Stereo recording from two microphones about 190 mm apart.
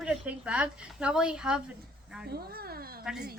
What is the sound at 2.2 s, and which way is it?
Speech, 55° right (ahead or behind).